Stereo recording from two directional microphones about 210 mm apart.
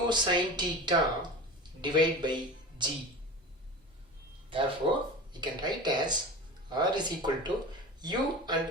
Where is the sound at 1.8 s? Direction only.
20° right (ahead or behind).